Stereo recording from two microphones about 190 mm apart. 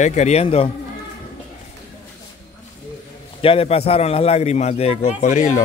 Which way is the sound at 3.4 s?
30° left (ahead or behind).